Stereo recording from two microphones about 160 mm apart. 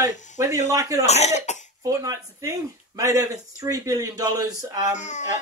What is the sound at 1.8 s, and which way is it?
Speech, 20° right (ahead or behind).